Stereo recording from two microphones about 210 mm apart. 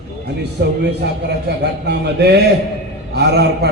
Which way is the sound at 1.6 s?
50° right (ahead or behind).